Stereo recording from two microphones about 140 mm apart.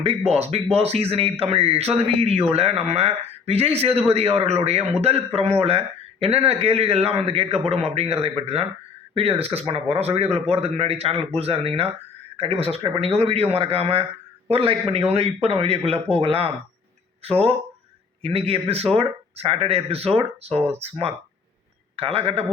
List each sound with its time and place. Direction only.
0.3 s speech: 50° right (ahead or behind)
20.6 s speech: 15° right (ahead or behind)
21.9 s speech: 45° right (ahead or behind)